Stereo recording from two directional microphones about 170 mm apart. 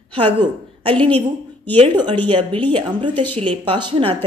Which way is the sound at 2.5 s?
30° right (ahead or behind).